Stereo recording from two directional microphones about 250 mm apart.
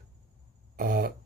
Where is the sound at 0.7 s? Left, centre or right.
Right.